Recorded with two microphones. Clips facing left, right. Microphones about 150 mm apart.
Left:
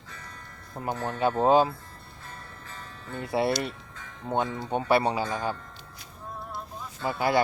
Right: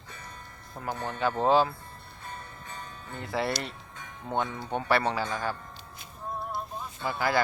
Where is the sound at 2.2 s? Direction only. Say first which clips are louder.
Right 3 dB; 20° right (ahead or behind).